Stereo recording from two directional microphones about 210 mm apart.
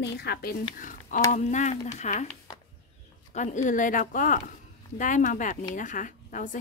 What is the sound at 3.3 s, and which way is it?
Speech, 35° left (ahead or behind).